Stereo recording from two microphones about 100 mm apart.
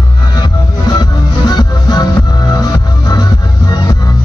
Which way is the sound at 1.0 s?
45° left (ahead or behind).